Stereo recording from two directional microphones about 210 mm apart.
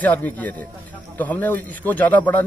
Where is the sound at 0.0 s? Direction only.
10° left (ahead or behind).